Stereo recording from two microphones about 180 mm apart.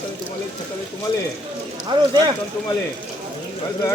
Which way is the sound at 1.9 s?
25° right (ahead or behind).